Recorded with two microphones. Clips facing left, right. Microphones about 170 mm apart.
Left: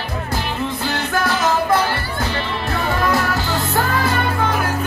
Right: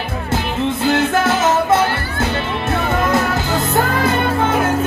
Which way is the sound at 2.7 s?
20° right (ahead or behind).